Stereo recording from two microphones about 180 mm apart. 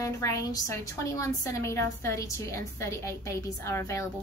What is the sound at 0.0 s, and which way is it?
A woman's voice, 15° left (ahead or behind).